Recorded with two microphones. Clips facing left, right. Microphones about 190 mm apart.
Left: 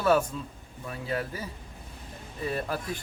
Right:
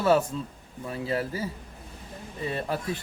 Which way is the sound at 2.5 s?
25° right (ahead or behind).